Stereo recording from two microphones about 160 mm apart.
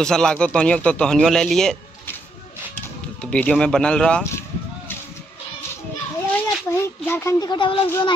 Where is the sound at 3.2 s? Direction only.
5° left (ahead or behind).